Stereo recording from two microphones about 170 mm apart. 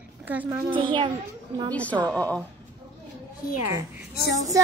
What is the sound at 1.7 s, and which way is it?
Speech, 10° left (ahead or behind).